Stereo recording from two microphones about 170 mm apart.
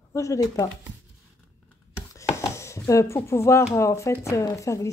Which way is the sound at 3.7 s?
15° left (ahead or behind).